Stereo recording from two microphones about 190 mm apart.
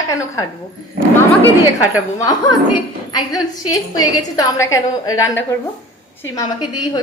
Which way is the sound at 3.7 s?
20° left (ahead or behind).